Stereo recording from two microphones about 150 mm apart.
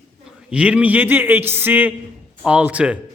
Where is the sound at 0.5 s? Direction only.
10° right (ahead or behind).